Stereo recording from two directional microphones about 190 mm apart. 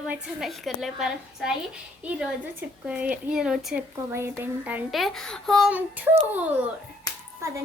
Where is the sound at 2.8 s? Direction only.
5° right (ahead or behind).